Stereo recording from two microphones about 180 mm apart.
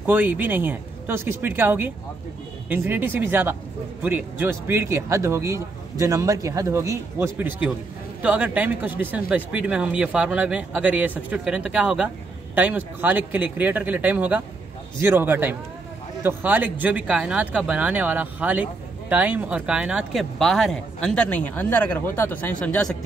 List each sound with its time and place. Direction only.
0.0 s speech: 10° right (ahead or behind)